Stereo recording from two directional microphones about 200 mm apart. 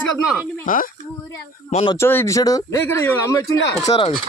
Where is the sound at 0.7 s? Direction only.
40° left (ahead or behind).